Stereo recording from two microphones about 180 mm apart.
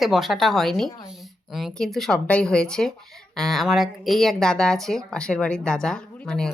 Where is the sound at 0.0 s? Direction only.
Centre (ahead or behind).